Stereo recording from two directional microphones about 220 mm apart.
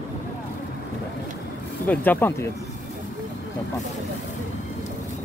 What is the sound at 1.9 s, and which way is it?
Speech, 10° left (ahead or behind).